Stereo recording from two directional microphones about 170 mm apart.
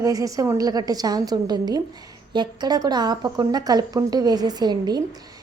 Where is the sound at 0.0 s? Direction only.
20° right (ahead or behind).